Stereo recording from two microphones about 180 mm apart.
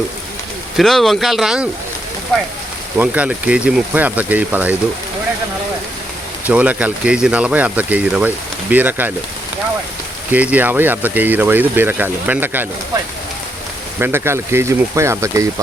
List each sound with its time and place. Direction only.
0.8 s speech: centre (ahead or behind)
3.0 s speech: 10° right (ahead or behind)
6.4 s speech: 10° right (ahead or behind)
10.3 s speech: 10° right (ahead or behind)
14.0 s speech: 15° right (ahead or behind)